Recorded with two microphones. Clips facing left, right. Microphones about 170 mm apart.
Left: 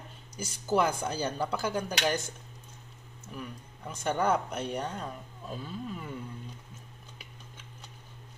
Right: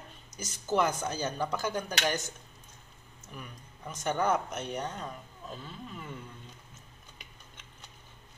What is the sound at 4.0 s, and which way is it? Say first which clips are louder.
Speech: left 1 dB; 10° left (ahead or behind).